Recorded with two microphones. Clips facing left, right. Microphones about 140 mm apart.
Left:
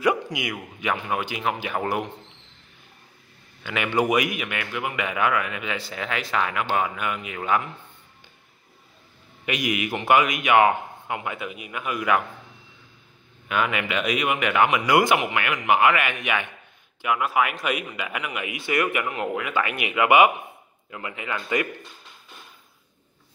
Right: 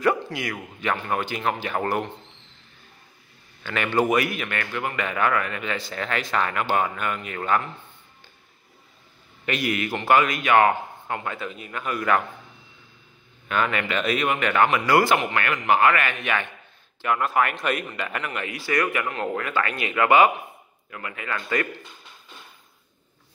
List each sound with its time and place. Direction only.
0.0 s a man's voice: 15° left (ahead or behind)
3.6 s a man's voice: 10° left (ahead or behind)
9.5 s a man's voice: 10° left (ahead or behind)
13.5 s a man's voice: 10° left (ahead or behind)